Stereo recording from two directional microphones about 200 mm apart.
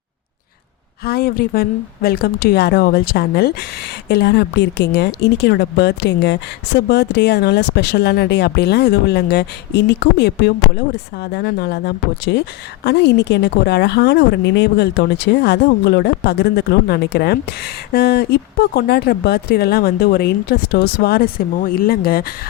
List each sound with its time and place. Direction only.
1.0 s a woman's voice: 50° left (ahead or behind)